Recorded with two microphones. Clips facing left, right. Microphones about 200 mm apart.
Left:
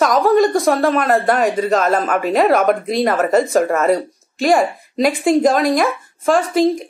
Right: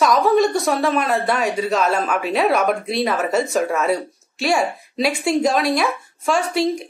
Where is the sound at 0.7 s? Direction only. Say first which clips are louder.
Left 4 dB; 50° left (ahead or behind).